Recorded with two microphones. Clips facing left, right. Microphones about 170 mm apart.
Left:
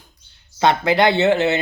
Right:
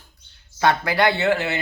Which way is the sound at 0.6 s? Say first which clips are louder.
Left 3 dB; 20° left (ahead or behind).